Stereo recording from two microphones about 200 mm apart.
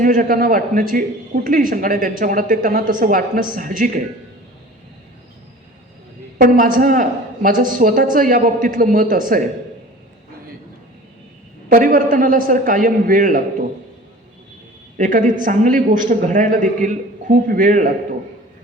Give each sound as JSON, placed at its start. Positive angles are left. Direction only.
{"t": 0.0, "sound": "a woman's voice", "side_deg": -45}
{"t": 6.4, "sound": "a woman's voice", "side_deg": -45}
{"t": 11.7, "sound": "a woman's voice", "side_deg": -45}
{"t": 14.9, "sound": "a man's voice", "side_deg": -40}